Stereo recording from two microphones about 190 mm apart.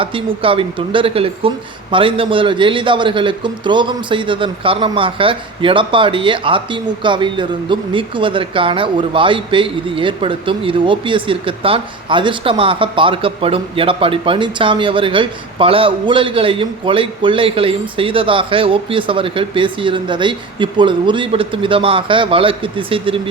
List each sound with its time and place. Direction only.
0.0 s speech: 30° right (ahead or behind)